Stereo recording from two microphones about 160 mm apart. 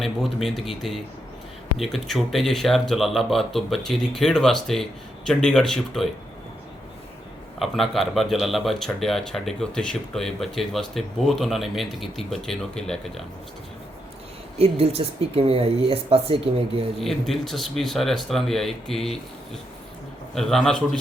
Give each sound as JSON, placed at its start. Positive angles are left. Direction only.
{"t": 0.0, "sound": "speech", "side_deg": 0}
{"t": 7.6, "sound": "speech", "side_deg": 0}
{"t": 14.6, "sound": "speech", "side_deg": -40}
{"t": 17.0, "sound": "speech", "side_deg": 0}
{"t": 20.3, "sound": "speech", "side_deg": 5}